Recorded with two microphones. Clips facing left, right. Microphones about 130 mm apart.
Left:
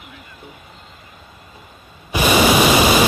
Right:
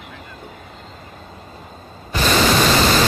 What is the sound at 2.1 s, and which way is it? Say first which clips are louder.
Pink noise: left 2 dB; 10° left (ahead or behind).